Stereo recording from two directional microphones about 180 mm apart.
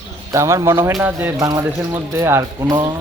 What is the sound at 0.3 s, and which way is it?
Speech, 15° right (ahead or behind).